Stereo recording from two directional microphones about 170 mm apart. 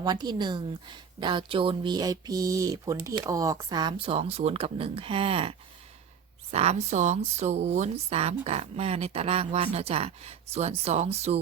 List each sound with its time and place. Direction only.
0.0 s a woman's voice: 25° right (ahead or behind)